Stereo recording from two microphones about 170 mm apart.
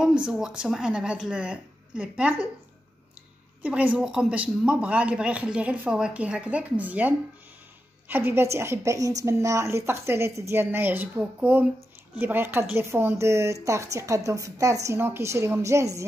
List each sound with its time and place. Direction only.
0.0 s speech: 5° right (ahead or behind)
3.6 s a woman's voice: 10° right (ahead or behind)